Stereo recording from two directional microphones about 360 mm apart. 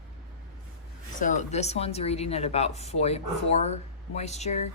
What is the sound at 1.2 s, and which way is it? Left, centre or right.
A woman's voice, left.